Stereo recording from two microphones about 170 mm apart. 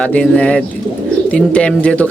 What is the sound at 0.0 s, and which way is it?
Speech, 5° left (ahead or behind).